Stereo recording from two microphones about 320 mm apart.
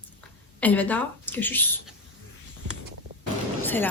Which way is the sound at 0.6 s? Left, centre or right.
Centre.